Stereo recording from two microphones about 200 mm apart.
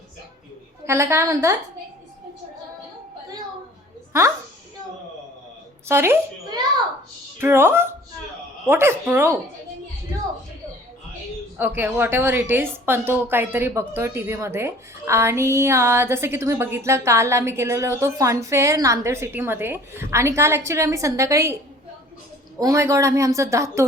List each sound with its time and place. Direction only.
0.9 s a woman's voice: 15° right (ahead or behind)
5.9 s a child's voice: 10° right (ahead or behind)
11.5 s a woman's voice: 10° right (ahead or behind)
22.5 s a woman's voice: 15° right (ahead or behind)